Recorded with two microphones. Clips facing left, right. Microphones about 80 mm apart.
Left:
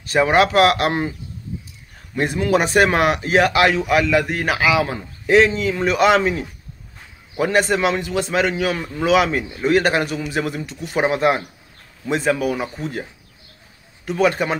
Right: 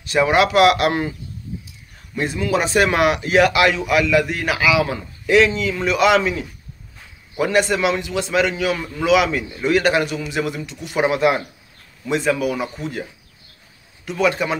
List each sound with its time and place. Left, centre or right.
0.0 s speech: left
2.1 s speech: left
14.0 s speech: left